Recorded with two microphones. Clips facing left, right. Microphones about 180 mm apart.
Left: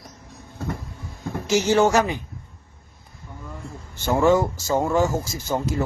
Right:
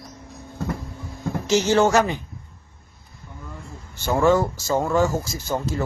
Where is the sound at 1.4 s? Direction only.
15° left (ahead or behind).